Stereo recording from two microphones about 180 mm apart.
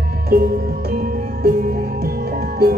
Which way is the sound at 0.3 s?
55° right (ahead or behind).